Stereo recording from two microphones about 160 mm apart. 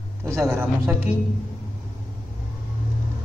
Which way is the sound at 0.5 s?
15° right (ahead or behind).